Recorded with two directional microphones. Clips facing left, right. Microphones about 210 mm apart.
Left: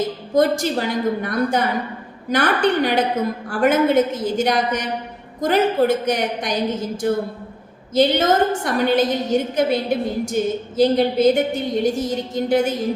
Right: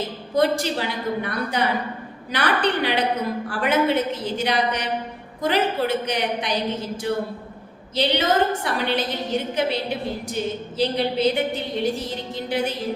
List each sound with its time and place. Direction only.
0.3 s a woman's voice: 45° left (ahead or behind)